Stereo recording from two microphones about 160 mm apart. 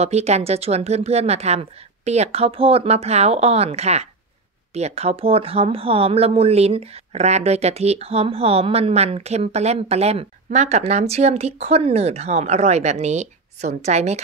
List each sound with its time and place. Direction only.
0.0 s speech: 45° right (ahead or behind)